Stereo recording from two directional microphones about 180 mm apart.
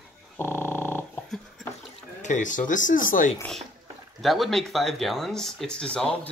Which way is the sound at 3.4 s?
5° left (ahead or behind).